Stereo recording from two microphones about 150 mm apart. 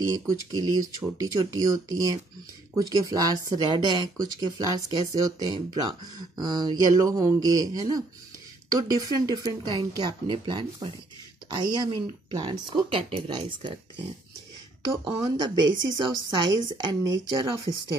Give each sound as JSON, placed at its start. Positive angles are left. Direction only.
{"t": 0.3, "sound": "speech", "side_deg": -25}